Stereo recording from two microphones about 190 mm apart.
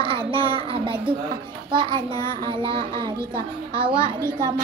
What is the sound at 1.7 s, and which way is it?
A child's voice, 25° right (ahead or behind).